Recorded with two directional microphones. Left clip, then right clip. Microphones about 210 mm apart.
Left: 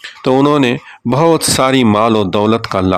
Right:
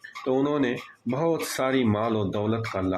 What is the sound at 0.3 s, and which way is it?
Speech, 40° left (ahead or behind).